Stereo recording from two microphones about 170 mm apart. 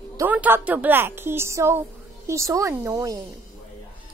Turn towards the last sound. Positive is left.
turn(degrees=-20)  # may be behind; listen again after turning